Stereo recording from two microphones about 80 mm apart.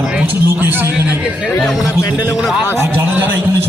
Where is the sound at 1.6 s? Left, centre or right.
Centre.